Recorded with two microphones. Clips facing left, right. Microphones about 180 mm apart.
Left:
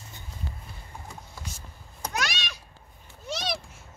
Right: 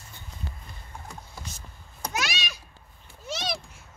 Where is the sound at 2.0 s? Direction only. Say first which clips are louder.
Even; 5° right (ahead or behind).